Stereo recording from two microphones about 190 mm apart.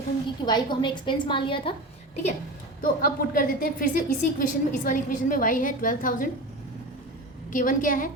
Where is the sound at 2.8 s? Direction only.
50° left (ahead or behind).